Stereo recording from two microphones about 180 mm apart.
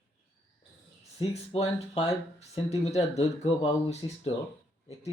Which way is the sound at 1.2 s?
35° left (ahead or behind).